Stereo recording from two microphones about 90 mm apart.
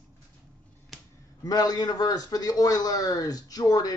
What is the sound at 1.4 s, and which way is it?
A man's voice, 45° left (ahead or behind).